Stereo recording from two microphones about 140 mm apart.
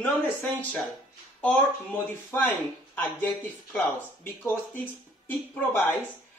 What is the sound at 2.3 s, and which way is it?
Speech, 15° left (ahead or behind).